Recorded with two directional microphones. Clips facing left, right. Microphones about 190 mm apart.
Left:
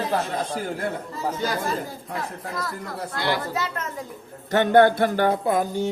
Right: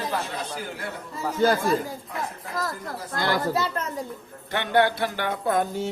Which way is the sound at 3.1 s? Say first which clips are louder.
Right 2 dB; 45° right (ahead or behind).